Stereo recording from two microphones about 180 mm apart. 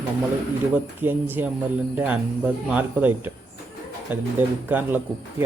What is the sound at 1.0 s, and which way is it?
Speech, 10° right (ahead or behind).